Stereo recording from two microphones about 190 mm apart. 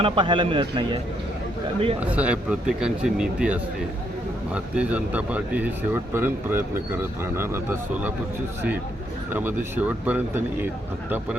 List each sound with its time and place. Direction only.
0.0 s a man's voice: 25° right (ahead or behind)
2.0 s speech: 5° right (ahead or behind)
9.3 s speech: 10° right (ahead or behind)